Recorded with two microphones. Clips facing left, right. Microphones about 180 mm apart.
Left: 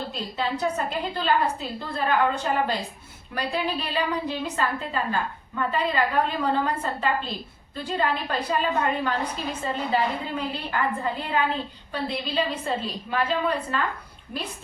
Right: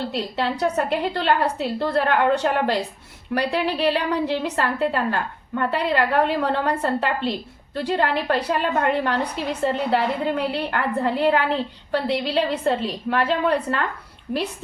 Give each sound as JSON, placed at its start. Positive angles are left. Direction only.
{"t": 0.1, "sound": "a woman's voice", "side_deg": -75}